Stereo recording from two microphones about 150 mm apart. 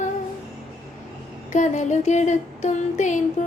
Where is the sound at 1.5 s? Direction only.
55° left (ahead or behind).